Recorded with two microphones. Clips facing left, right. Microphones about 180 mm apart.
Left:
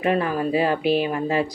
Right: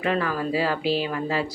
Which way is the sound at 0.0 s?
20° left (ahead or behind).